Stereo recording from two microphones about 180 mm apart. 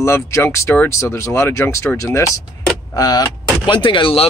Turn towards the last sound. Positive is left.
turn(degrees=30)  # may be behind; listen again after turning